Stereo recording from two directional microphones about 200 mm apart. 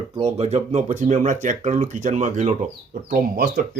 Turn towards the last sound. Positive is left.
turn(degrees=-50)  # may be behind; listen again after turning